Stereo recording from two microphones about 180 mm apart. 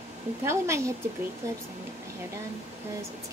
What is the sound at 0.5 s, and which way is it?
Speech, 15° right (ahead or behind).